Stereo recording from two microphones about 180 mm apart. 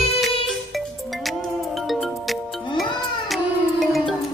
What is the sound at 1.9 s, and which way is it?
Music, centre (ahead or behind).